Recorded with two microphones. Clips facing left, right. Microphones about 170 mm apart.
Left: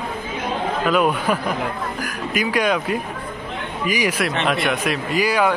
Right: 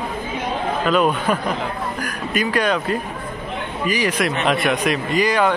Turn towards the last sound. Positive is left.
turn(degrees=10)  # may be behind; listen again after turning